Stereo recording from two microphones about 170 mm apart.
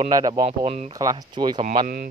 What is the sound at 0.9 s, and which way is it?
Speech, 20° right (ahead or behind).